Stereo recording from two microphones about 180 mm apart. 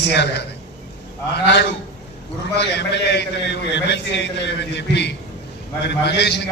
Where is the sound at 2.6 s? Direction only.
70° left (ahead or behind).